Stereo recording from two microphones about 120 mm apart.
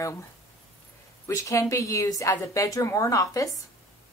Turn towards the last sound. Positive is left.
turn(degrees=30)  # may be behind; listen again after turning